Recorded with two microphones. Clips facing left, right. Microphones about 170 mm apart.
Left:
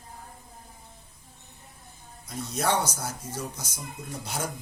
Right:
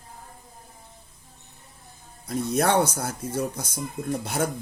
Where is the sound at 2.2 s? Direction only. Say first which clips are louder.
Right 6 dB; 60° right (ahead or behind).